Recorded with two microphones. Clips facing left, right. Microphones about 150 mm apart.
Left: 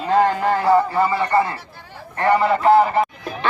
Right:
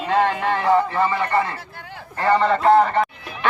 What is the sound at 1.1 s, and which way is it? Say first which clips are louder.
Speech: left 3 dB; 30° left (ahead or behind).